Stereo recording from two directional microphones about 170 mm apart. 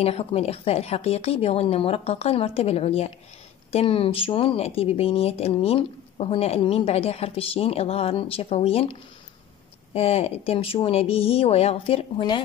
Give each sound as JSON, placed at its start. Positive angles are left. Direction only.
{"t": 0.0, "sound": "speech", "side_deg": 35}
{"t": 9.9, "sound": "speech", "side_deg": 35}